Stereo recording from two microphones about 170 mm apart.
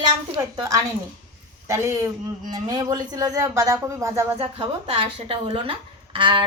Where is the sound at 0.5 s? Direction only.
20° right (ahead or behind).